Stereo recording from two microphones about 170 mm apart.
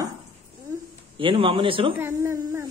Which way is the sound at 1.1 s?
30° right (ahead or behind).